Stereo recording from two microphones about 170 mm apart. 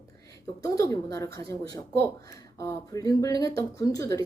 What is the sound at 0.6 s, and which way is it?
Speech, 20° left (ahead or behind).